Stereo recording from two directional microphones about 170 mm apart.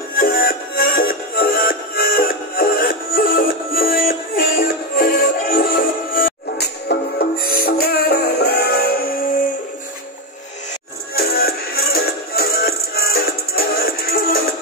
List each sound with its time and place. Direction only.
0.1 s music: 60° left (ahead or behind)
11.1 s music: 65° left (ahead or behind)